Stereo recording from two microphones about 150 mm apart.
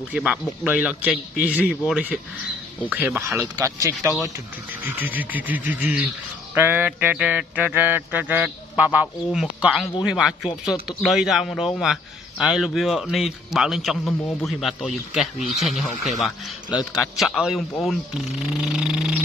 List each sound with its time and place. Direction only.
0.1 s mantra: 10° right (ahead or behind)
2.9 s speech: 10° right (ahead or behind)
4.8 s mantra: 10° right (ahead or behind)
9.3 s speech: 5° right (ahead or behind)
17.2 s speech: centre (ahead or behind)